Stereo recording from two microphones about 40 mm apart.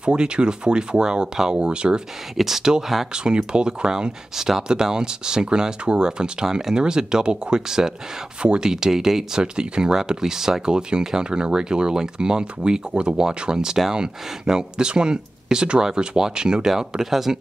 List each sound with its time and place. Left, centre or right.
0.0 s speech: right
2.3 s speech: centre
3.3 s speech: right
4.4 s speech: centre; by 13.2 s right
13.2 s speech: centre